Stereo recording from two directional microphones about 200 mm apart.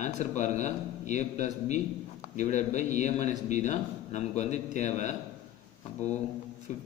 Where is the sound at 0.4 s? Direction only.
35° left (ahead or behind).